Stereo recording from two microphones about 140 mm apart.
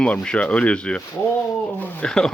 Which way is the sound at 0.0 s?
5° left (ahead or behind).